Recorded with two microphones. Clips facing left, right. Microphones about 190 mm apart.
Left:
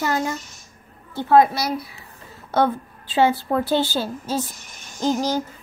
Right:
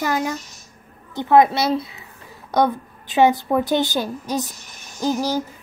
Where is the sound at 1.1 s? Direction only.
20° right (ahead or behind).